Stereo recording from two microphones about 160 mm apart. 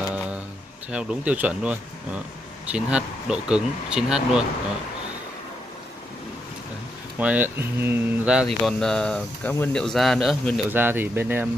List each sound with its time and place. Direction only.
0.9 s speech: 5° right (ahead or behind)
7.2 s speech: 10° right (ahead or behind)
10.7 s speech: 10° right (ahead or behind)